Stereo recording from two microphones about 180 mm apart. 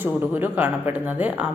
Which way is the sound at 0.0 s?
10° right (ahead or behind).